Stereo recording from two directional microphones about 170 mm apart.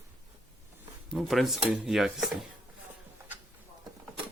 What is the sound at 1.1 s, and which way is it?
Speech, centre (ahead or behind).